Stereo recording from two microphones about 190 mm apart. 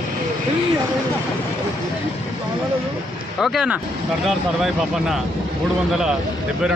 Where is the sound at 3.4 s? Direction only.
5° right (ahead or behind).